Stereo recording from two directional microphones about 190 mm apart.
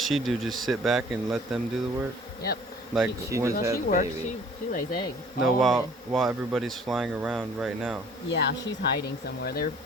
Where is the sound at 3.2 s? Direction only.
15° right (ahead or behind).